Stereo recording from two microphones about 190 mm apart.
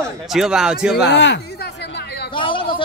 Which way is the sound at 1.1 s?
65° left (ahead or behind).